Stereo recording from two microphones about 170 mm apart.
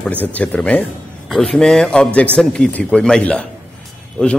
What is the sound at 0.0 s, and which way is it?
A man's voice, 10° left (ahead or behind).